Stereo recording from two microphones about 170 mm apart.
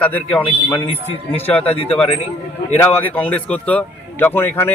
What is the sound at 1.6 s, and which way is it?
Speech, 35° left (ahead or behind).